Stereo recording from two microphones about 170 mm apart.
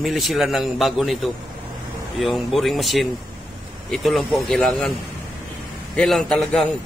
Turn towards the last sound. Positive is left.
turn(degrees=0)  # may be behind; listen again after turning